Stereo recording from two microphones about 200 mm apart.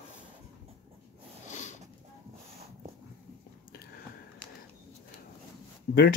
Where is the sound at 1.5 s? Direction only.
35° left (ahead or behind).